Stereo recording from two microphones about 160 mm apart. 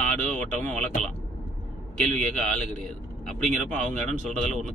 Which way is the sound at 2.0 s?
5° left (ahead or behind).